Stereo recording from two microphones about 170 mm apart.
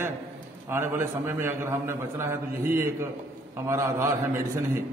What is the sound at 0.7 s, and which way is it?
A man's voice, 15° right (ahead or behind).